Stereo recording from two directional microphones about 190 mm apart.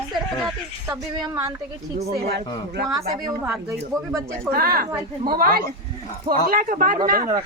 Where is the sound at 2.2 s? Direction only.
60° right (ahead or behind).